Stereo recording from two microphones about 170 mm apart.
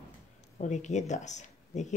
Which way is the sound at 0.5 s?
45° left (ahead or behind).